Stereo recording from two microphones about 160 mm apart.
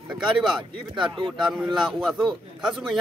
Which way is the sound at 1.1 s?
30° right (ahead or behind).